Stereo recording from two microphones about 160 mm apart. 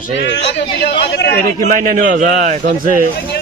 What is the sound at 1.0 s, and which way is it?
Speech, 90° left.